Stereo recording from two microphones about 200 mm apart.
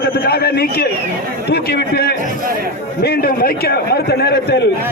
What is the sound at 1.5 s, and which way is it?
A man's voice, 55° left (ahead or behind).